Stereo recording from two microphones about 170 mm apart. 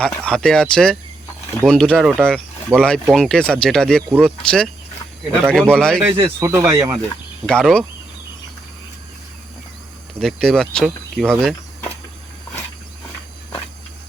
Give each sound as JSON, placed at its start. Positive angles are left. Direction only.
{"t": 0.0, "sound": "speech", "side_deg": 5}
{"t": 6.0, "sound": "speech", "side_deg": -10}
{"t": 7.4, "sound": "speech", "side_deg": 5}
{"t": 10.2, "sound": "speech", "side_deg": 5}